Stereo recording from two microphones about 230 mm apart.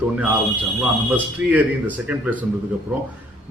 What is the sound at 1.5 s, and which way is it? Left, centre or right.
Speech, centre.